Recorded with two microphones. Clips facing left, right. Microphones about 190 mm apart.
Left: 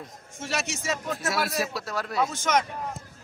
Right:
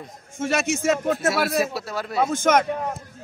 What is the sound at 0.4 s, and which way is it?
A man's voice, 50° right (ahead or behind).